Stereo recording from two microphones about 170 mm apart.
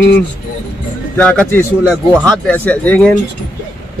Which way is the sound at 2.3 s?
10° left (ahead or behind).